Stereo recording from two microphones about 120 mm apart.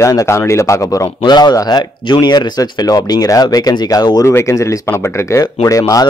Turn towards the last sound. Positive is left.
turn(degrees=30)  # may be behind; listen again after turning